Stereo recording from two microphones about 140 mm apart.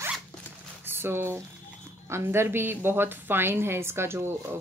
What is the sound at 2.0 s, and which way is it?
Speech, 20° right (ahead or behind).